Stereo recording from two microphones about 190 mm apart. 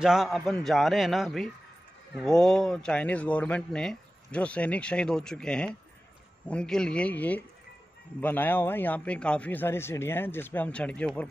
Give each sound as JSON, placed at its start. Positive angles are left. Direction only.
{"t": 0.0, "sound": "a man's voice", "side_deg": 0}